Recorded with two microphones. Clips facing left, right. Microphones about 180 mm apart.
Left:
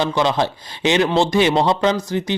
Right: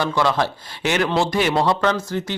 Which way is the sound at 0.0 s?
20° left (ahead or behind).